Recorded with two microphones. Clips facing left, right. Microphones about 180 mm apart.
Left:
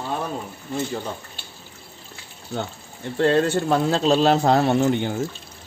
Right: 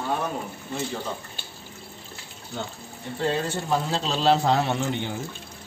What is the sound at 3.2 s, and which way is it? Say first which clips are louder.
Speech: left 8 dB; 75° left (ahead or behind).